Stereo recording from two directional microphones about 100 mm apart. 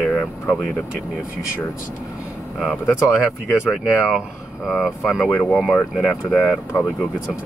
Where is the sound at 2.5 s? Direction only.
Centre (ahead or behind).